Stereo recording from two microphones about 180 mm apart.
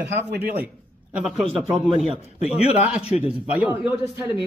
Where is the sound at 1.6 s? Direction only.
Centre (ahead or behind).